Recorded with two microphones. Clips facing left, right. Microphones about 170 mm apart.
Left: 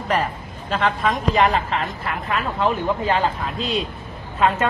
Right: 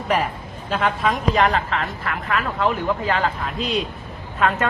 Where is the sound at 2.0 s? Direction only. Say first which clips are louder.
Even; 25° left (ahead or behind).